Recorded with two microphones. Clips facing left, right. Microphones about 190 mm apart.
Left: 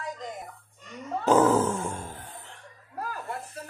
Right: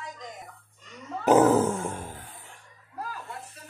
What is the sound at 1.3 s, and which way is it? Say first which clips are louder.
Dog: right 2 dB; 15° right (ahead or behind).